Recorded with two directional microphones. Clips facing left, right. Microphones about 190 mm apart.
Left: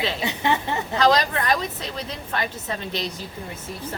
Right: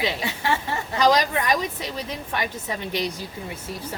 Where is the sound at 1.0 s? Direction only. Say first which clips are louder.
Even; 15° right (ahead or behind).